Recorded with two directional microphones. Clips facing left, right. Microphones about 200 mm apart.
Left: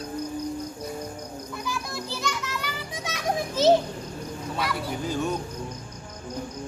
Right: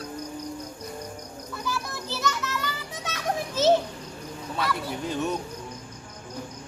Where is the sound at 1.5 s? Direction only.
15° left (ahead or behind).